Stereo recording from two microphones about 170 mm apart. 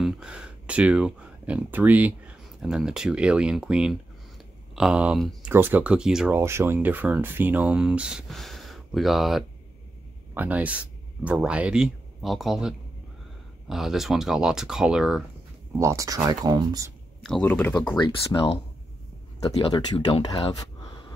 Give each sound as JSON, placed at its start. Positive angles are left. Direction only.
{"t": 0.0, "sound": "speech", "side_deg": -5}
{"t": 15.8, "sound": "speech", "side_deg": -20}
{"t": 17.2, "sound": "speech", "side_deg": 5}
{"t": 17.9, "sound": "speech", "side_deg": 30}